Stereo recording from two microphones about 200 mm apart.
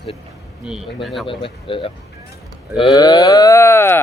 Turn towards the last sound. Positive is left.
turn(degrees=10)  # may be behind; listen again after turning